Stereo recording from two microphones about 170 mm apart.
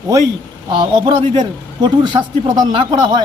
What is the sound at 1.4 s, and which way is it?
A man's voice, 25° right (ahead or behind).